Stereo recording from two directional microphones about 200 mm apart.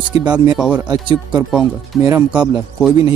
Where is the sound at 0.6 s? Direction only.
5° right (ahead or behind).